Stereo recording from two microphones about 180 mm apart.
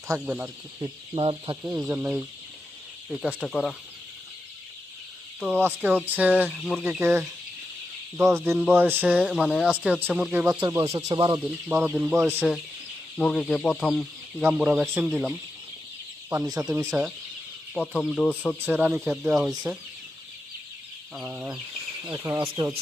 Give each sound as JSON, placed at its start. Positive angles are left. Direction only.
{"t": 0.1, "sound": "speech", "side_deg": -10}
{"t": 0.8, "sound": "speech", "side_deg": -30}
{"t": 1.8, "sound": "speech", "side_deg": -10}
{"t": 5.4, "sound": "speech", "side_deg": -10}
{"t": 7.0, "sound": "speech", "side_deg": -15}
{"t": 10.9, "sound": "speech", "side_deg": -25}
{"t": 11.7, "sound": "speech", "side_deg": -5}
{"t": 16.3, "sound": "speech", "side_deg": -15}
{"t": 16.8, "sound": "speech", "side_deg": -5}
{"t": 18.6, "sound": "speech", "side_deg": -10}
{"t": 21.2, "sound": "speech", "side_deg": -5}